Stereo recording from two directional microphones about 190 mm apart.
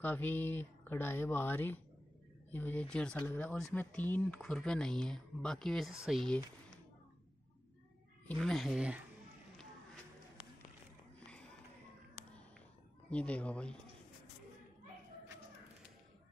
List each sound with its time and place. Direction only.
0.0 s speech: 10° left (ahead or behind)
8.3 s speech: centre (ahead or behind)
11.1 s a sound: 5° left (ahead or behind)
13.1 s speech: 5° left (ahead or behind)